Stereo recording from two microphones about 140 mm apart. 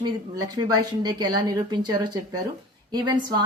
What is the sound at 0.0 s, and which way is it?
A woman's voice, 30° right (ahead or behind).